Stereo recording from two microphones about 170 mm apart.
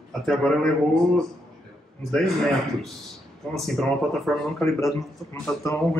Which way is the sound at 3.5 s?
Centre (ahead or behind).